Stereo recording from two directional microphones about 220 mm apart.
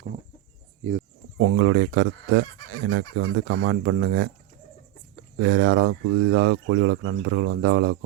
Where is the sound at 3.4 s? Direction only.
60° right (ahead or behind).